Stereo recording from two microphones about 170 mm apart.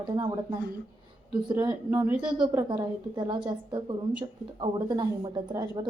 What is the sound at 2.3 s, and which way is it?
A woman's voice, 30° right (ahead or behind).